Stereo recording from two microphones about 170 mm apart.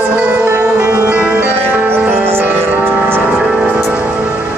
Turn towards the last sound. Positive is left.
turn(degrees=0)  # may be behind; listen again after turning